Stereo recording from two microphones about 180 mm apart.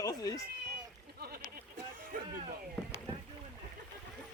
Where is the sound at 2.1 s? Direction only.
50° right (ahead or behind).